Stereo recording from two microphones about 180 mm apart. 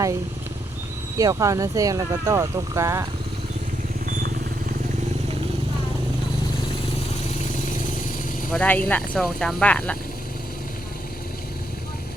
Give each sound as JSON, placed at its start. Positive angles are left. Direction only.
{"t": 1.2, "sound": "speech", "side_deg": -20}
{"t": 8.5, "sound": "speech", "side_deg": 10}